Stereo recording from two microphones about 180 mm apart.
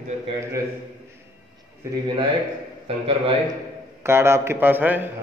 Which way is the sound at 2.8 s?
30° right (ahead or behind).